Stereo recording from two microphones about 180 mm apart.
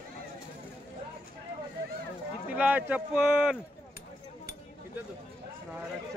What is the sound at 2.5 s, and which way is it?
Speech, 10° right (ahead or behind).